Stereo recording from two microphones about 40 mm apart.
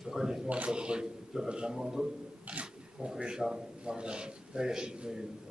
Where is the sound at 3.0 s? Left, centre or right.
Right.